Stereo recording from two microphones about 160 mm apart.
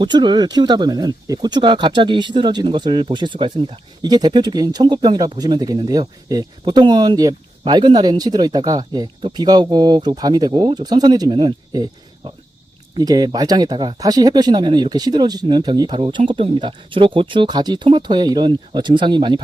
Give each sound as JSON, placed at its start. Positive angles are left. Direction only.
{"t": 0.0, "sound": "speech", "side_deg": -30}